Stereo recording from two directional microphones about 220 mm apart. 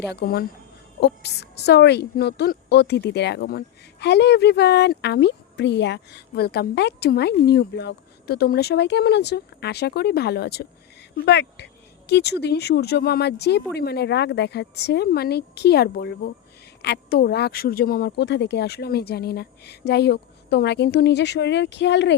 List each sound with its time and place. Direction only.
0.0 s speech: 50° left (ahead or behind)